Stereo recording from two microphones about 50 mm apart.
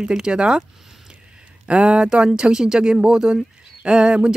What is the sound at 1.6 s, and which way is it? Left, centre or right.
Speech, right.